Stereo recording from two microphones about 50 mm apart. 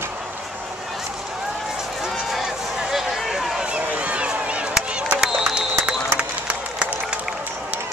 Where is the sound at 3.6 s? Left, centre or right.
Right.